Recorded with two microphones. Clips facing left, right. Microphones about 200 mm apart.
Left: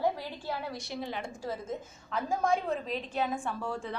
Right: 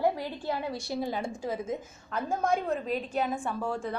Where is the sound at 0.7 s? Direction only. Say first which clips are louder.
Right 5 dB; 35° right (ahead or behind).